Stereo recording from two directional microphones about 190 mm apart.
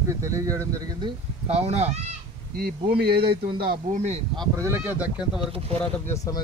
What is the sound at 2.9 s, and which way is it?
Speech, 55° right (ahead or behind).